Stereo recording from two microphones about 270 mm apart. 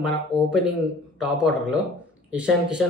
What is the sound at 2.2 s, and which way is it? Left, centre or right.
Speech, centre.